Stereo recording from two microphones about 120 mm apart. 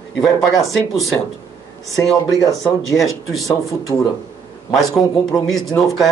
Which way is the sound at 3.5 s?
25° left (ahead or behind).